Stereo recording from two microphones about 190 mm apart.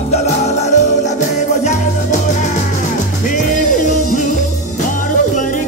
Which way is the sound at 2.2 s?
40° left (ahead or behind).